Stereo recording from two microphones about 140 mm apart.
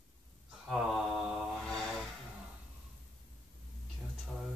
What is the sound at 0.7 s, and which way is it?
Mantra, centre (ahead or behind).